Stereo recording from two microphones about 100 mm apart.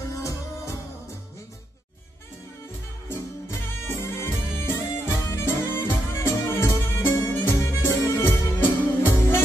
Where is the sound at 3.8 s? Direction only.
25° left (ahead or behind).